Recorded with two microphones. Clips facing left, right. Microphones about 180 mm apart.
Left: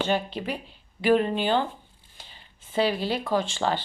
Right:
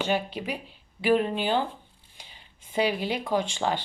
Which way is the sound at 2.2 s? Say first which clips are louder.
Left 1 dB; 15° right (ahead or behind).